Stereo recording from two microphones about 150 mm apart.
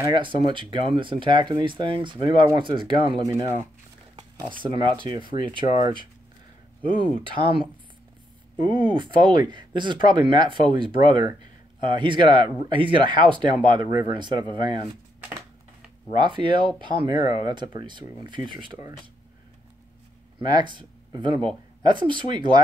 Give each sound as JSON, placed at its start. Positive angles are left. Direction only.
{"t": 0.0, "sound": "speech", "side_deg": -30}
{"t": 3.3, "sound": "speech", "side_deg": -20}
{"t": 4.6, "sound": "speech", "side_deg": -30}
{"t": 8.5, "sound": "speech", "side_deg": -30}
{"t": 16.1, "sound": "speech", "side_deg": -30}
{"t": 20.3, "sound": "speech", "side_deg": -30}